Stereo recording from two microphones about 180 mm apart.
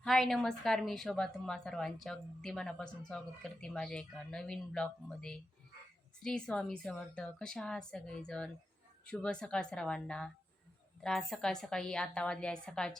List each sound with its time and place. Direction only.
0.0 s a woman's voice: centre (ahead or behind)